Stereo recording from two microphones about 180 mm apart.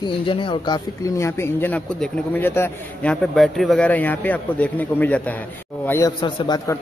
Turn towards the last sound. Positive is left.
turn(degrees=25)  # may be behind; listen again after turning